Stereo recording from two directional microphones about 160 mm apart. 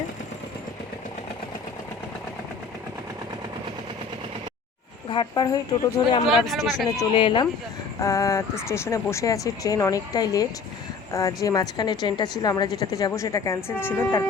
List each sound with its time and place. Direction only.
5.0 s a woman's voice: 30° left (ahead or behind)
6.2 s speech: centre (ahead or behind)
7.1 s speech: 30° left (ahead or behind)
7.9 s a woman's voice: 20° left (ahead or behind)